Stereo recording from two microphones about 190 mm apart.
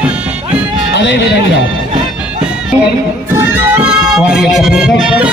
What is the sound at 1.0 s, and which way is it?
Speech, 65° left (ahead or behind).